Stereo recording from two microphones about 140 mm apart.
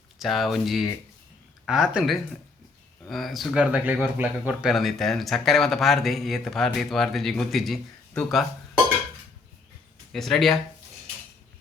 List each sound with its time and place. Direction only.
0.2 s speech: centre (ahead or behind)
10.1 s speech: centre (ahead or behind)